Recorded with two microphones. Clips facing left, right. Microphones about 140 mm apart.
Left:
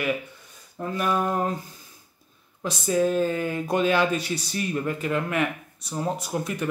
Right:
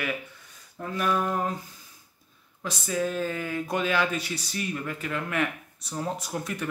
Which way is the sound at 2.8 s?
30° left (ahead or behind).